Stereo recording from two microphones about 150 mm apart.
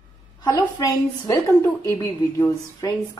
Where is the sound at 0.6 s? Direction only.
20° left (ahead or behind).